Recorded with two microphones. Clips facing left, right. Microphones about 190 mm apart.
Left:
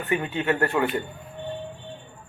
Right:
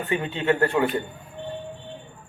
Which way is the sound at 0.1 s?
20° right (ahead or behind).